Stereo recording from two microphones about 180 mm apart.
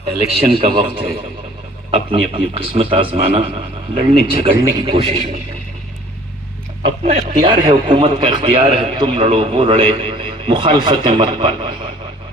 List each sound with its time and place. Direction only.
0.0 s a man's voice: 30° right (ahead or behind)
6.8 s a man's voice: 35° right (ahead or behind)